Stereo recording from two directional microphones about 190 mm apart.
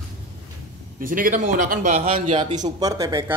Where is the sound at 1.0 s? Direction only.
45° right (ahead or behind); by 2.7 s 30° right (ahead or behind).